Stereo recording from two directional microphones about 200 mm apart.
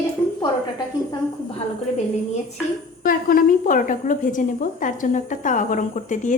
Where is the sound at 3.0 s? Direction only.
45° left (ahead or behind).